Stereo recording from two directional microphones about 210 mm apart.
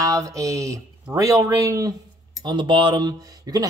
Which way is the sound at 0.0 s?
15° right (ahead or behind).